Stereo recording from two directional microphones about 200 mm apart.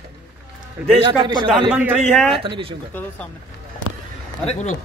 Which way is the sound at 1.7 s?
5° right (ahead or behind).